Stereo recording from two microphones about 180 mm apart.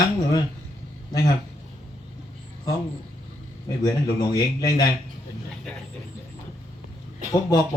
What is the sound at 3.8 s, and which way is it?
Speech, 20° left (ahead or behind).